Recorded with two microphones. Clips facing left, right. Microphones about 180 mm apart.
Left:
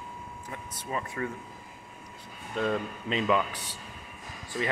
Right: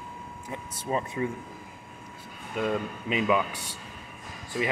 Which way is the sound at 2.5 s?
10° right (ahead or behind).